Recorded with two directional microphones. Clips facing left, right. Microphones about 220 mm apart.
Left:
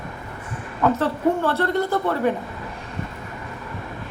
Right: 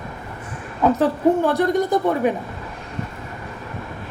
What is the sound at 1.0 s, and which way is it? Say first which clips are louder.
A woman's voice: right 4 dB; 15° right (ahead or behind).